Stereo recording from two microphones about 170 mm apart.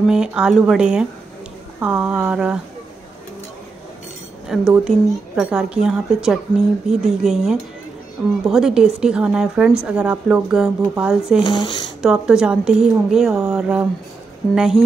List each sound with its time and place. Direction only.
0.1 s a woman's voice: 5° right (ahead or behind)
4.5 s a woman's voice: 5° right (ahead or behind)
11.4 s speech: 25° left (ahead or behind)
12.0 s a woman's voice: 5° right (ahead or behind)